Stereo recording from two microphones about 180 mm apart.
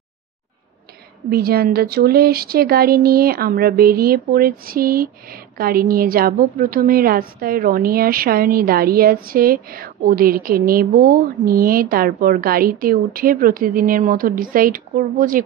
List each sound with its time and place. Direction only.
1.3 s a woman's voice: 55° right (ahead or behind)